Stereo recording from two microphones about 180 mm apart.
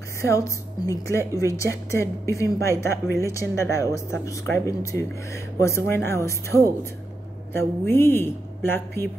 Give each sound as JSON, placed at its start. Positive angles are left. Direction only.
{"t": 0.2, "sound": "speech", "side_deg": 15}